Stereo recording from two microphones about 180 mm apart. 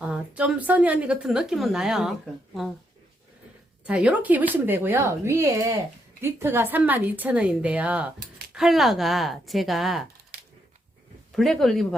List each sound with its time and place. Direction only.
0.0 s a woman's voice: 5° right (ahead or behind)
3.8 s a woman's voice: 5° right (ahead or behind)
11.3 s a woman's voice: centre (ahead or behind)